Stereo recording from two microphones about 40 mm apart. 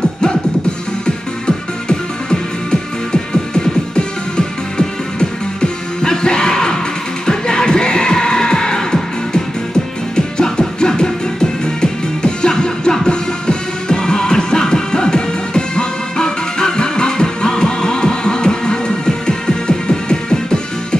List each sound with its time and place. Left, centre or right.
1.9 s music: centre